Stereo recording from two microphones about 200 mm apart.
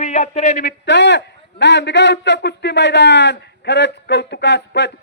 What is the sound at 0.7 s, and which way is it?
Speech, 60° left (ahead or behind).